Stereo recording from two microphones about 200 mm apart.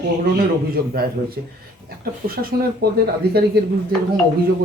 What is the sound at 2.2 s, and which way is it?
Speech, 50° right (ahead or behind).